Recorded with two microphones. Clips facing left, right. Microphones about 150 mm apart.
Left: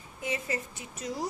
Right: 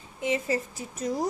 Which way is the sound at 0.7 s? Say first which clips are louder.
Right 6 dB; 45° right (ahead or behind).